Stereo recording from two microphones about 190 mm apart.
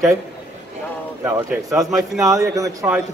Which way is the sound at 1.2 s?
15° right (ahead or behind).